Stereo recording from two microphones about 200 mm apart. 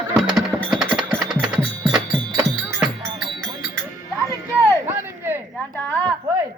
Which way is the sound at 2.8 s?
20° right (ahead or behind).